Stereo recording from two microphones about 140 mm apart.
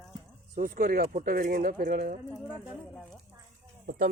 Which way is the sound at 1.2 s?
80° right.